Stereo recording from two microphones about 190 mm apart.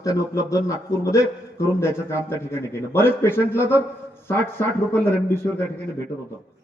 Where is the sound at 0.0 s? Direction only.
15° left (ahead or behind).